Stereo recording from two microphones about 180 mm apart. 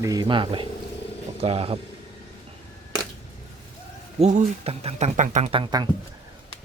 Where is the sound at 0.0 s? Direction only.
20° right (ahead or behind).